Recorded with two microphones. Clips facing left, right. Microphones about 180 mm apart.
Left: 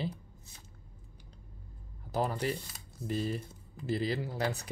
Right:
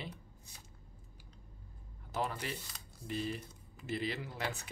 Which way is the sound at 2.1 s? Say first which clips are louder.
Left 6 dB; 35° left (ahead or behind).